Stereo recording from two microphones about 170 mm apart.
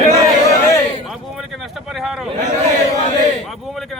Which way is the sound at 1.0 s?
Centre (ahead or behind).